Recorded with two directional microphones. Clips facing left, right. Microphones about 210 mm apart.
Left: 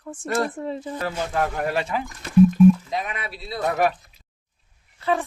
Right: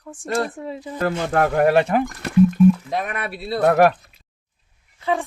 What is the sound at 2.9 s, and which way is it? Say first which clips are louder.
Speech: right 4 dB; 55° right (ahead or behind).